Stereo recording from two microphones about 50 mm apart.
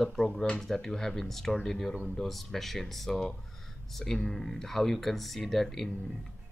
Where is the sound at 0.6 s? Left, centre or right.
Centre.